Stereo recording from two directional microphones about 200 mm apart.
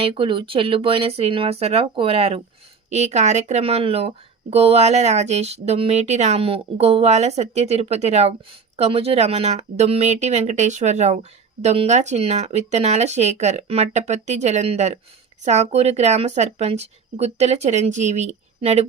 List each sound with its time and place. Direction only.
0.0 s speech: 25° right (ahead or behind)